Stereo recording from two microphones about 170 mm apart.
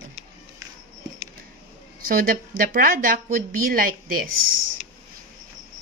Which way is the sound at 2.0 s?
60° right (ahead or behind).